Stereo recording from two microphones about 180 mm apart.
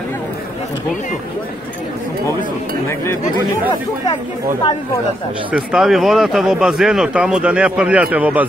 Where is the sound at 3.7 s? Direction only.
20° left (ahead or behind).